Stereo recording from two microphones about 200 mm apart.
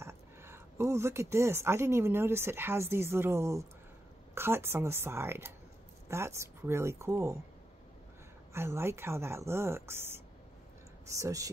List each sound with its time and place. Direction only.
0.0 s speech: 15° right (ahead or behind)
8.5 s speech: 10° right (ahead or behind)